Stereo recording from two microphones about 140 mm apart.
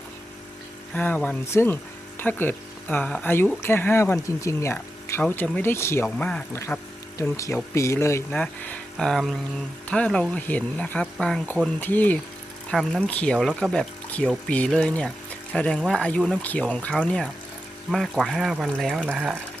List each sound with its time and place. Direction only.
0.9 s speech: 10° left (ahead or behind)
6.1 s speech: 5° left (ahead or behind)
6.5 s speech: 20° left (ahead or behind); by 18.9 s centre (ahead or behind)
19.1 s speech: 10° right (ahead or behind)